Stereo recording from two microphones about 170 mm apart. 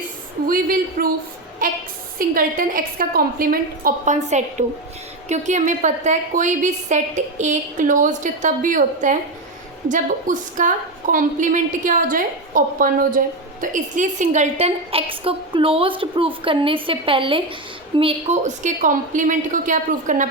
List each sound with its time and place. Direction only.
0.4 s a woman's voice: 55° right (ahead or behind)